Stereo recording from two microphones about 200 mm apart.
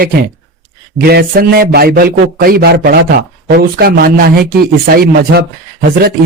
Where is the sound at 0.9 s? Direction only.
50° right (ahead or behind).